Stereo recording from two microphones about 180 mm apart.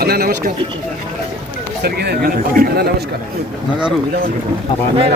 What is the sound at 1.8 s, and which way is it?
Speech, 60° right (ahead or behind).